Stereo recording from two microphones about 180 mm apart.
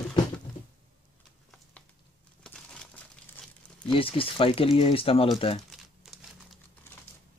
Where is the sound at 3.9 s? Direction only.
30° left (ahead or behind).